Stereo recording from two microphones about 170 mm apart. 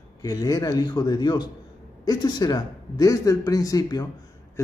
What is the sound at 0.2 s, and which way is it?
Speech, 20° left (ahead or behind).